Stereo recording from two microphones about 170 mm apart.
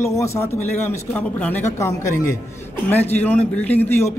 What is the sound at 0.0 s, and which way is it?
A man's voice, 15° left (ahead or behind).